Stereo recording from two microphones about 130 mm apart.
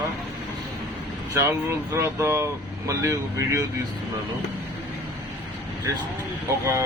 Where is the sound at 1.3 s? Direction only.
20° right (ahead or behind).